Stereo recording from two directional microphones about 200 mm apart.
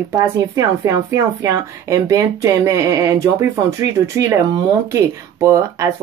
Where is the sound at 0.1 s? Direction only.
15° right (ahead or behind).